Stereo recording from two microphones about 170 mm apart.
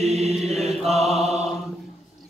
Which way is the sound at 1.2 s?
40° right (ahead or behind).